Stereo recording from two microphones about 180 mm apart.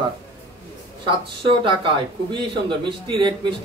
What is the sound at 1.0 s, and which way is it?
A man's voice, 30° right (ahead or behind).